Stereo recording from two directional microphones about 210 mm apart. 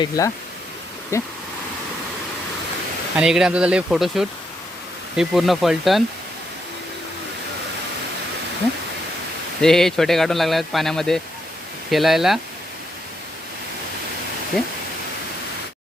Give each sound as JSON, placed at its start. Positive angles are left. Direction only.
{"t": 0.2, "sound": "speech", "side_deg": 15}
{"t": 3.2, "sound": "speech", "side_deg": -5}
{"t": 9.6, "sound": "speech", "side_deg": 0}
{"t": 14.5, "sound": "speech", "side_deg": 0}